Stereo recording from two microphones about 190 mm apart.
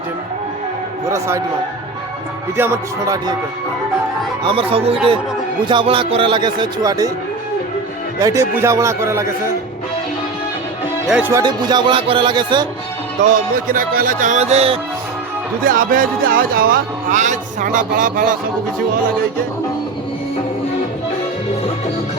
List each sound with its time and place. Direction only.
2.6 s speech: 15° right (ahead or behind)
4.4 s speech: 30° right (ahead or behind)
8.2 s speech: 15° right (ahead or behind)
11.1 s speech: 10° right (ahead or behind)
13.7 s speech: 45° right (ahead or behind)
15.6 s speech: 45° right (ahead or behind)